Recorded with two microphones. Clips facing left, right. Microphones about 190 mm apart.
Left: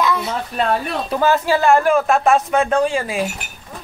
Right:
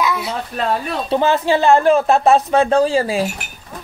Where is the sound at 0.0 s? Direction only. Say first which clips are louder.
Left 1 dB; 10° right (ahead or behind).